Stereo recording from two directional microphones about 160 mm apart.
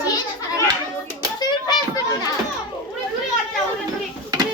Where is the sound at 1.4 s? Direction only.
25° left (ahead or behind).